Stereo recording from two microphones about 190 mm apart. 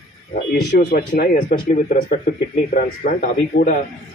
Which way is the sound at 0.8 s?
45° left (ahead or behind).